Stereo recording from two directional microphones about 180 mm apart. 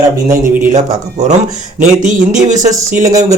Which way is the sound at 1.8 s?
45° right (ahead or behind).